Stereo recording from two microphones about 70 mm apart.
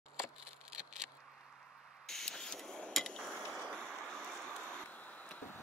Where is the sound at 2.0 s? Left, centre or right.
Centre.